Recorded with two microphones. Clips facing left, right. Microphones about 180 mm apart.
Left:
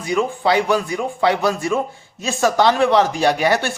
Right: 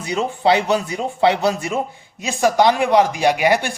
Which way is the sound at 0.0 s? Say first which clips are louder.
Even; 25° right (ahead or behind).